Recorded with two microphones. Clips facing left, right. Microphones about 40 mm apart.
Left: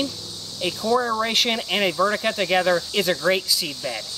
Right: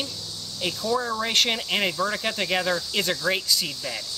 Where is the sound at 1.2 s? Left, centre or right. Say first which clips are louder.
Left 2 dB; centre.